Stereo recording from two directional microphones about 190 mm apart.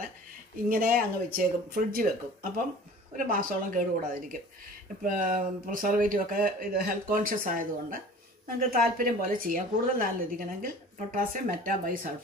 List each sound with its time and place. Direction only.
0.7 s speech: 50° right (ahead or behind)
3.2 s speech: 45° right (ahead or behind)